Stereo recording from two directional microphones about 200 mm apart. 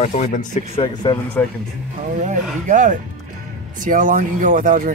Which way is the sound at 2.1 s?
40° right (ahead or behind).